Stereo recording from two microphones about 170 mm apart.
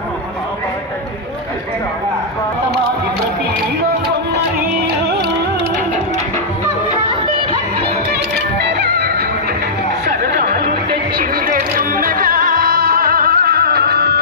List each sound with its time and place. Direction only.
4.4 s music: 75° right (ahead or behind)
8.1 s music: 80° right
10.0 s chatter: 65° right (ahead or behind)
11.1 s music: 55° right (ahead or behind); by 14.2 s 70° right (ahead or behind)